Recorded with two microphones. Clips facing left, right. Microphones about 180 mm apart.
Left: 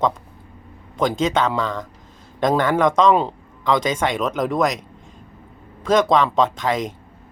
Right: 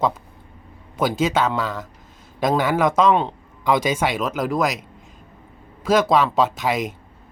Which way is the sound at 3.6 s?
10° right (ahead or behind).